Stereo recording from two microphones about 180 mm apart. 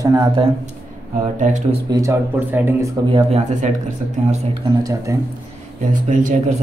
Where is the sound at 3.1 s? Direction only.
35° right (ahead or behind).